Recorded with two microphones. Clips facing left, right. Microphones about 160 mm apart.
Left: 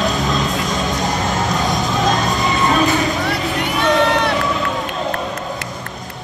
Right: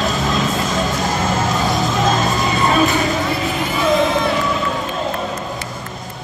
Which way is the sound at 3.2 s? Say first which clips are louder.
Even; 70° left (ahead or behind).